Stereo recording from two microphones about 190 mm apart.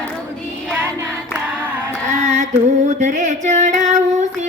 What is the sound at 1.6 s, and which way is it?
Music, 10° right (ahead or behind).